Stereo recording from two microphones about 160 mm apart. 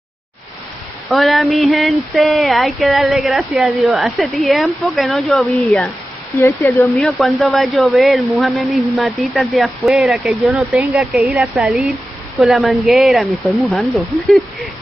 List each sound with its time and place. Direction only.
1.0 s speech: centre (ahead or behind)
6.3 s speech: 20° left (ahead or behind)
7.1 s speech: centre (ahead or behind)